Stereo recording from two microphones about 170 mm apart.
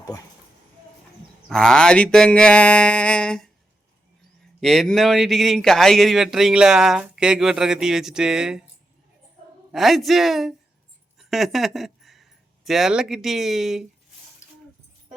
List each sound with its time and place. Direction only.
0.0 s speech: 20° left (ahead or behind)
1.5 s speech: 5° left (ahead or behind)
4.6 s speech: 5° left (ahead or behind)
9.7 s speech: centre (ahead or behind)